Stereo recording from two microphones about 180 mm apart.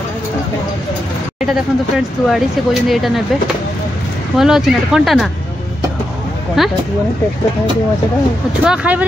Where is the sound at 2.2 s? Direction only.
Centre (ahead or behind).